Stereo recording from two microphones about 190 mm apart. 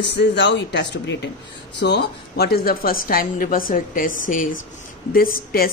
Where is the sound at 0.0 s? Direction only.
65° left (ahead or behind).